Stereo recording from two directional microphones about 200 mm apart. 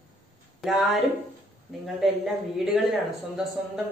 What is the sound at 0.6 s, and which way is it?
Speech, centre (ahead or behind).